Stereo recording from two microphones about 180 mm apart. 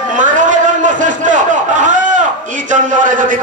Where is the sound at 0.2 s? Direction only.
45° right (ahead or behind).